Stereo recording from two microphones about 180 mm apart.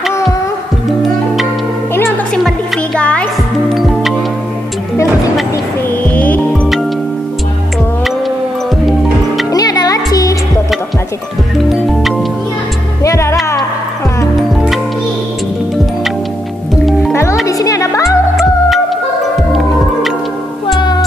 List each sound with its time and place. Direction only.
2.0 s music: 5° left (ahead or behind)
6.0 s music: 10° left (ahead or behind)
9.5 s music: 20° left (ahead or behind)
11.5 s music: centre (ahead or behind)
13.0 s music: 15° left (ahead or behind)
14.5 s music: centre (ahead or behind)
17.1 s music: 15° left (ahead or behind)